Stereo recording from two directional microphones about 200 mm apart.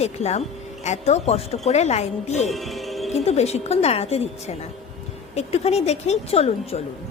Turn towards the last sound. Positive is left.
turn(degrees=30)  # may be behind; listen again after turning